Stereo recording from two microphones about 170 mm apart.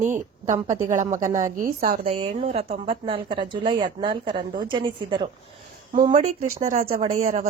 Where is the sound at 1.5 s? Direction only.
55° right (ahead or behind).